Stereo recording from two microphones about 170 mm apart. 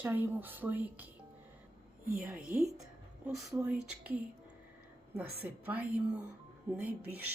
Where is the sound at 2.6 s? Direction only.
20° right (ahead or behind).